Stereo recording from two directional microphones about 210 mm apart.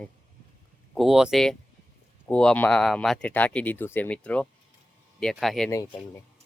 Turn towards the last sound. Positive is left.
turn(degrees=15)  # may be behind; listen again after turning